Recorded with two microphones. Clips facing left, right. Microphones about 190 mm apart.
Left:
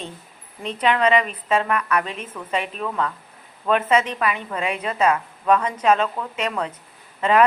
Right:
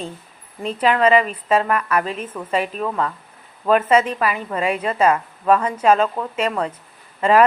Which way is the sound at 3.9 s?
5° right (ahead or behind).